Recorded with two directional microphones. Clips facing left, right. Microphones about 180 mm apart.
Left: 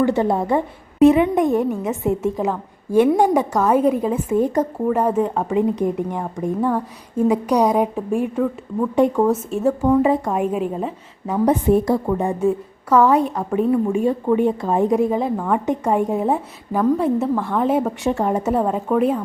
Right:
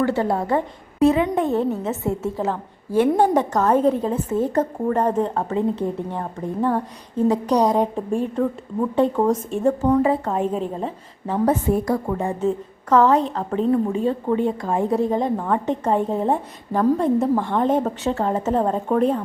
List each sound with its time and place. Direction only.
0.0 s a woman's voice: 20° left (ahead or behind); by 10.0 s centre (ahead or behind)
10.0 s a woman's voice: 15° left (ahead or behind)